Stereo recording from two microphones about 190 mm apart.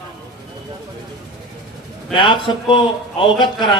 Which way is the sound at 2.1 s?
25° left (ahead or behind).